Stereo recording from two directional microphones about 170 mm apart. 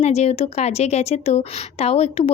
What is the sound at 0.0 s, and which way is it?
A woman's voice, 40° left (ahead or behind).